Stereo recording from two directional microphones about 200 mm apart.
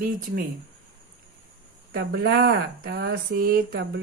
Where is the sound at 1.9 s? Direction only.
55° right (ahead or behind).